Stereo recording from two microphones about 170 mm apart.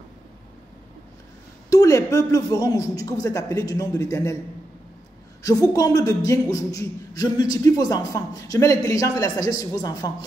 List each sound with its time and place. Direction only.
1.7 s speech: 20° left (ahead or behind)
5.7 s speech: 20° left (ahead or behind)